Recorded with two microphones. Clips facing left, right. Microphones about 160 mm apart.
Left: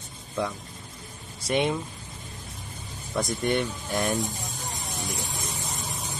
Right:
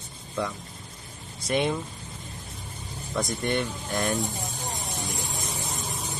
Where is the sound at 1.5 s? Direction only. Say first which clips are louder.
Even; 10° left (ahead or behind).